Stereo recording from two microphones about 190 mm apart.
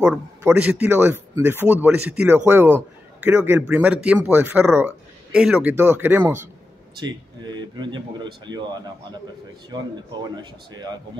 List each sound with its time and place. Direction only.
0.4 s a man's voice: 10° right (ahead or behind)
7.1 s speech: 25° right (ahead or behind)